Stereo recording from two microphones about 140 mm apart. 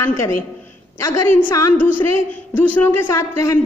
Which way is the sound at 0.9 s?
20° left (ahead or behind).